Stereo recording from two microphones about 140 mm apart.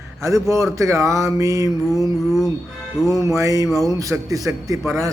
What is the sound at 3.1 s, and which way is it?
A man's voice, 25° right (ahead or behind).